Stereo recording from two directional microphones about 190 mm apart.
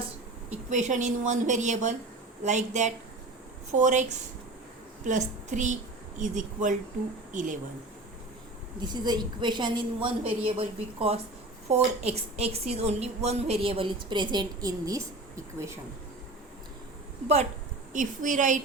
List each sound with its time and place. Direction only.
0.7 s a woman's voice: 40° right (ahead or behind)
5.0 s a woman's voice: 40° right (ahead or behind)
8.8 s a woman's voice: 25° right (ahead or behind)
17.9 s a woman's voice: 40° right (ahead or behind)